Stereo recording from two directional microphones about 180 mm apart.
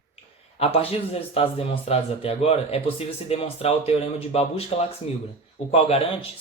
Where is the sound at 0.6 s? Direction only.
35° left (ahead or behind).